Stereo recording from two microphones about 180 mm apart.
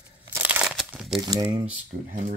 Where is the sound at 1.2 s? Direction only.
20° right (ahead or behind).